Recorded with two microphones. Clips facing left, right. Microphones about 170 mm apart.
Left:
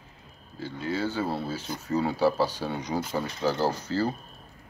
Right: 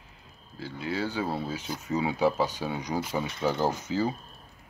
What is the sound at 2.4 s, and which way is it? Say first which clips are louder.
Speech: left 1 dB; 10° right (ahead or behind).